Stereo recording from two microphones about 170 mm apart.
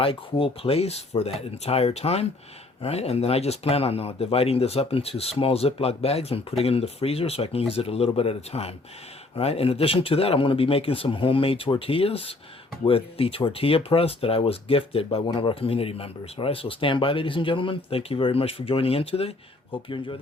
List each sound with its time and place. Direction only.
0.0 s speech: 30° left (ahead or behind)